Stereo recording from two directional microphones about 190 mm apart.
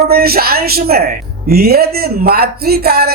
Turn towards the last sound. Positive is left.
turn(degrees=-55)  # may be behind; listen again after turning